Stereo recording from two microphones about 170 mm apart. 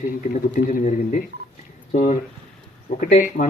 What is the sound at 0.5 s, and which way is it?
A man's voice, 45° left (ahead or behind).